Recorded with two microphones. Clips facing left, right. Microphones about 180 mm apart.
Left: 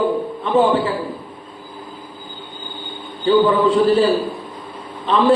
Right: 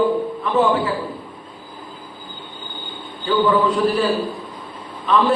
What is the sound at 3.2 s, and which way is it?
A man's voice, 25° left (ahead or behind).